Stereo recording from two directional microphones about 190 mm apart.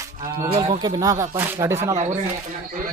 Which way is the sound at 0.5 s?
25° right (ahead or behind).